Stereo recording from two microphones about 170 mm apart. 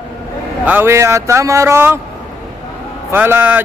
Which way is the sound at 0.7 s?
15° right (ahead or behind).